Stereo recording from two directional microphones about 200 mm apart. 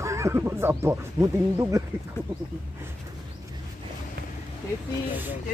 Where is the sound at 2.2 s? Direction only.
10° left (ahead or behind).